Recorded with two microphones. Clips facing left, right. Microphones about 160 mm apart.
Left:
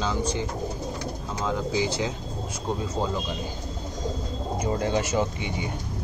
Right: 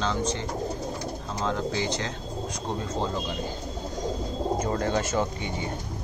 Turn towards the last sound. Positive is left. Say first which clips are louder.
# left 1 dB
turn(degrees=15)  # may be behind; listen again after turning